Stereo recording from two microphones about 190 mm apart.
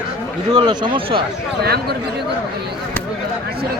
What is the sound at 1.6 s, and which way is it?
Speech, 55° right (ahead or behind).